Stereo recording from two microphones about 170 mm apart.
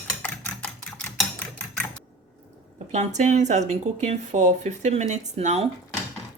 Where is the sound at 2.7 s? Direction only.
40° right (ahead or behind).